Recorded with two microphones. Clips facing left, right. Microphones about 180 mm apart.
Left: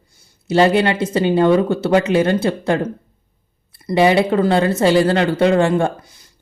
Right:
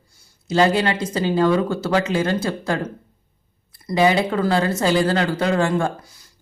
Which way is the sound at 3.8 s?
25° left (ahead or behind).